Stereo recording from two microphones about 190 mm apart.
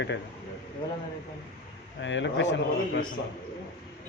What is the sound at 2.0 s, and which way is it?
A man's voice, 75° left (ahead or behind).